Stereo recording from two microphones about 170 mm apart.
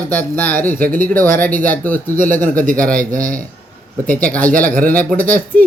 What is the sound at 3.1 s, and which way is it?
Speech, 50° right (ahead or behind).